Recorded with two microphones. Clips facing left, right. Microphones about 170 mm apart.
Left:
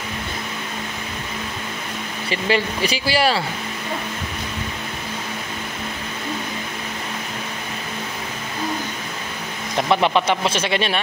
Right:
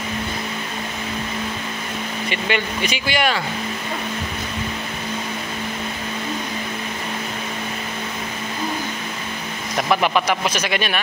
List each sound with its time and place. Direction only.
2.2 s speech: 35° left (ahead or behind)
9.8 s speech: 25° left (ahead or behind)